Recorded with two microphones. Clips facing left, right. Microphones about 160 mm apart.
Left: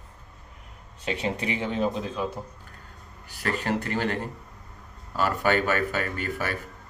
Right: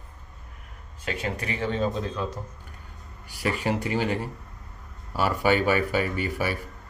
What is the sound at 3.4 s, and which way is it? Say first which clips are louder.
Speech: right 1 dB; 10° right (ahead or behind).